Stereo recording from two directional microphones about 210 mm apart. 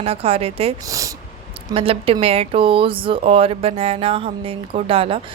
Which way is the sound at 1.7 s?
25° right (ahead or behind).